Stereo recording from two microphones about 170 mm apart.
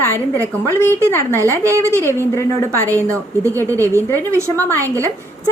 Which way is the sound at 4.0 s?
15° left (ahead or behind).